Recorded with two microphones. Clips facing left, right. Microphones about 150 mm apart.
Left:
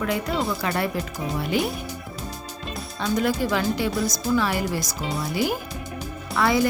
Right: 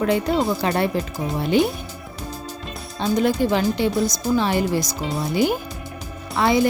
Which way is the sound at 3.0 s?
25° right (ahead or behind).